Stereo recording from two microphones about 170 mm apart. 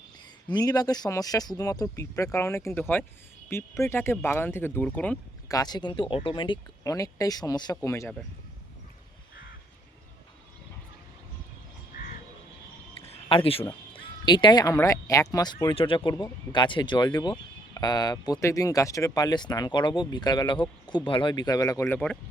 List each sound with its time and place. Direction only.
0.5 s speech: 20° left (ahead or behind)
5.5 s speech: 20° left (ahead or behind)
13.2 s speech: 30° left (ahead or behind); by 22.2 s 10° left (ahead or behind)